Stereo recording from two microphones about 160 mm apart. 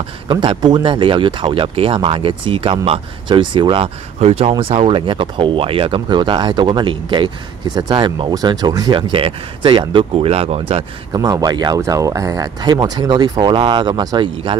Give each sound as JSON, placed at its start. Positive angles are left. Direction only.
{"t": 0.3, "sound": "speech", "side_deg": -30}